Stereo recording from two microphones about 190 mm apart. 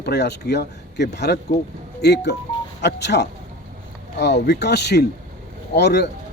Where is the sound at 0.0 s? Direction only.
60° left (ahead or behind).